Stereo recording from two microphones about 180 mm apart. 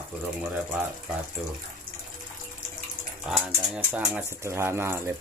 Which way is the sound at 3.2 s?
10° right (ahead or behind).